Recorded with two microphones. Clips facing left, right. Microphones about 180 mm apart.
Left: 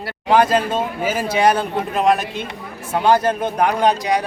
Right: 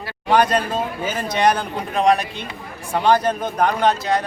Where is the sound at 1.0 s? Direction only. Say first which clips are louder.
Left 2 dB; 10° left (ahead or behind).